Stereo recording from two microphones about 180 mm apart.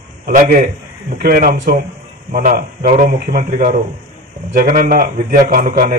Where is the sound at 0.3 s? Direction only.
45° right (ahead or behind).